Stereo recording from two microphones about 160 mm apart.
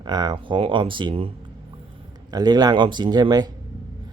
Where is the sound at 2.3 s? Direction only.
25° right (ahead or behind).